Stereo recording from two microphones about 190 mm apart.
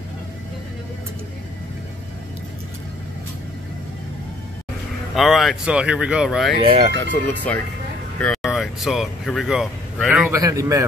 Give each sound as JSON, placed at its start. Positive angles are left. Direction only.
{"t": 5.1, "sound": "speech", "side_deg": 0}
{"t": 6.6, "sound": "speech", "side_deg": -30}
{"t": 7.0, "sound": "speech", "side_deg": 10}
{"t": 10.3, "sound": "a man's voice", "side_deg": -15}